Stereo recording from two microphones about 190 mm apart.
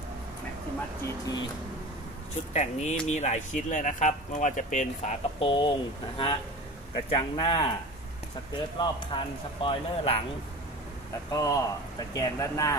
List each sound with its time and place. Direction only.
1.0 s speech: 20° left (ahead or behind)
2.5 s speech: 35° left (ahead or behind)
5.4 s speech: 25° left (ahead or behind)
8.7 s speech: 25° left (ahead or behind)
11.2 s speech: 20° left (ahead or behind)